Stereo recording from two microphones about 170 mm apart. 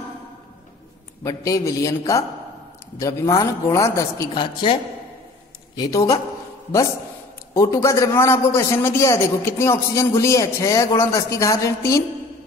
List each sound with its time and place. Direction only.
1.2 s a man's voice: 20° left (ahead or behind)
5.8 s a man's voice: 20° left (ahead or behind)
7.5 s a man's voice: 20° left (ahead or behind)